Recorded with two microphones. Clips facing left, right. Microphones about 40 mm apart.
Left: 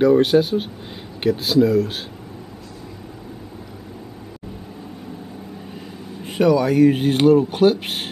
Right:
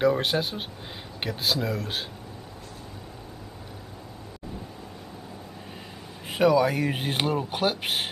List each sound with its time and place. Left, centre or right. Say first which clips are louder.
0.0 s speech: left 9 dB; centre
6.2 s speech: left 4 dB; centre